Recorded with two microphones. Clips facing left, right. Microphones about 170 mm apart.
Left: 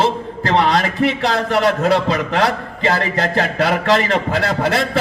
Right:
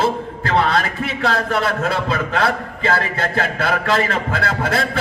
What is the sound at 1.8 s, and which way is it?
Speech, 35° left (ahead or behind).